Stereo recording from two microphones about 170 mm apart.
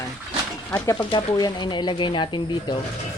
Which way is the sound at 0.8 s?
20° left (ahead or behind).